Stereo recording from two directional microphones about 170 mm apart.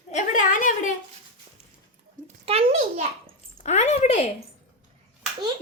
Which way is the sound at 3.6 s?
40° left (ahead or behind).